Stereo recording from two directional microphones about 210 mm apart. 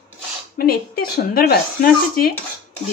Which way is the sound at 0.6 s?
45° left (ahead or behind).